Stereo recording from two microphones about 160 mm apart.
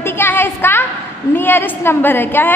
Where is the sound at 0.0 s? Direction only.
15° left (ahead or behind).